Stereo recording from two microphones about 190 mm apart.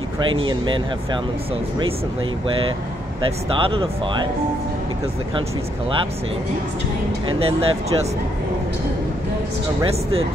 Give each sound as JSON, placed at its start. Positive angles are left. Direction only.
{"t": 0.4, "sound": "speech", "side_deg": -25}
{"t": 3.6, "sound": "speech", "side_deg": -25}
{"t": 7.2, "sound": "speech", "side_deg": -30}